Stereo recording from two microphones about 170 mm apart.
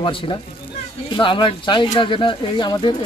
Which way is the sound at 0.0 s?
30° left (ahead or behind).